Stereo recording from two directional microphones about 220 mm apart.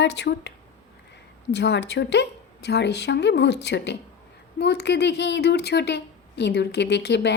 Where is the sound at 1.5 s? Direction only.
50° left (ahead or behind).